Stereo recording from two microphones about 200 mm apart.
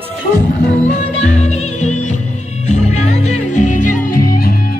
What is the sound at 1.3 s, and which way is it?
Music, 35° left (ahead or behind).